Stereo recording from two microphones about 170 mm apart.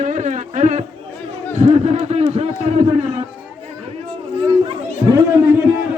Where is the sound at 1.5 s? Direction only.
45° right (ahead or behind).